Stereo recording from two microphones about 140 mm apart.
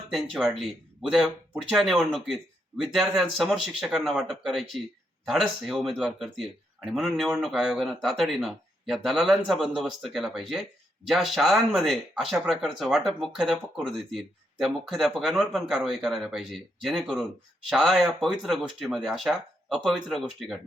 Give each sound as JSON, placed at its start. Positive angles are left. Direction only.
{"t": 0.1, "sound": "speech", "side_deg": -5}